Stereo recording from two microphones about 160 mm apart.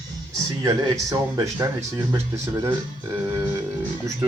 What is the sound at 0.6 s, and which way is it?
Speech, 20° right (ahead or behind).